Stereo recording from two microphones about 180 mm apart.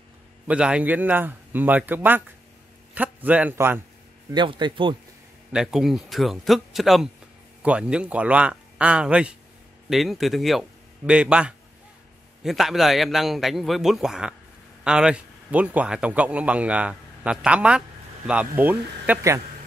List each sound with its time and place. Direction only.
0.5 s a man's voice: 5° right (ahead or behind)
4.3 s a man's voice: 25° right (ahead or behind)
5.5 s a man's voice: 5° right (ahead or behind)